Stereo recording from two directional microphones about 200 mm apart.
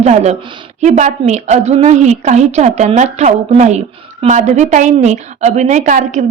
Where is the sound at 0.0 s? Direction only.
35° right (ahead or behind).